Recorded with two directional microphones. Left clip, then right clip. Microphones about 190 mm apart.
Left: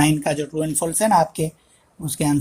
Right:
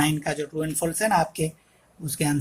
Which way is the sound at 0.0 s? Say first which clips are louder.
Left 5 dB; 35° left (ahead or behind).